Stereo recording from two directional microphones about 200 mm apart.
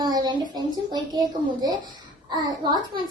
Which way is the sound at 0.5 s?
20° right (ahead or behind).